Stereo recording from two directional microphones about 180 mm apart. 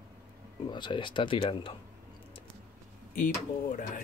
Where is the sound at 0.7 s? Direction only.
25° left (ahead or behind).